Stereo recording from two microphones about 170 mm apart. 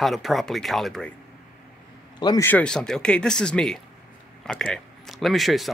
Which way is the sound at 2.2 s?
20° left (ahead or behind).